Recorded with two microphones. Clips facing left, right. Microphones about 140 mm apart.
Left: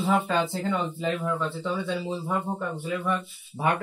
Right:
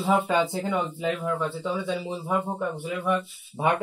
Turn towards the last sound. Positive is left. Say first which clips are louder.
# right 3 dB
turn(degrees=-20)  # may be behind; listen again after turning